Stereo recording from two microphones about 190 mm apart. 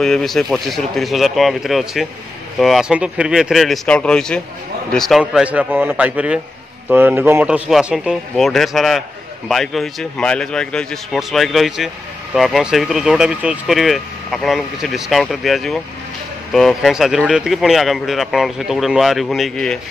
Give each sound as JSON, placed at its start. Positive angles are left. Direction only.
{"t": 0.0, "sound": "a man's voice", "side_deg": 0}